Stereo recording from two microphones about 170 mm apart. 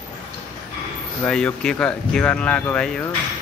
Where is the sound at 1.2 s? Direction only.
5° left (ahead or behind).